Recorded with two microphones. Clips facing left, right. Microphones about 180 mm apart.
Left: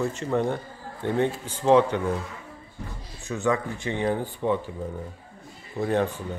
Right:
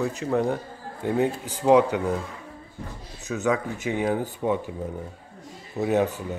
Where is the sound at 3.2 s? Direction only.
5° right (ahead or behind).